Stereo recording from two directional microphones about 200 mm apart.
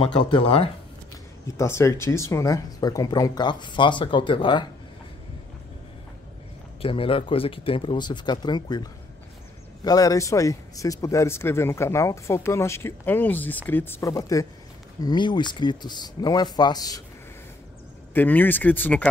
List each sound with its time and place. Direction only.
0.0 s speech: 25° left (ahead or behind)
1.6 s speech: 15° left (ahead or behind)
6.8 s speech: 25° left (ahead or behind)
9.8 s speech: 15° left (ahead or behind)
18.1 s speech: 10° left (ahead or behind)